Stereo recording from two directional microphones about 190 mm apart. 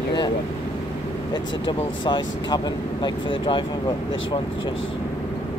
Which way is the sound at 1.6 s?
25° left (ahead or behind).